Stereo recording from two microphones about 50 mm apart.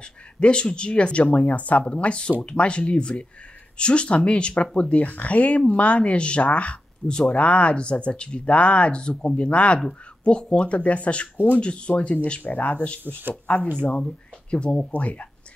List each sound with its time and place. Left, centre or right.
0.0 s speech: centre